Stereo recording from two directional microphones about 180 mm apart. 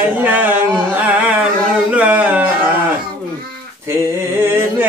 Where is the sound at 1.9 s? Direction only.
10° right (ahead or behind).